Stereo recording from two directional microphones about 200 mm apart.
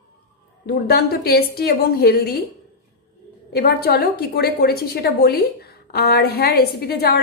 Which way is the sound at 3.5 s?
50° left (ahead or behind).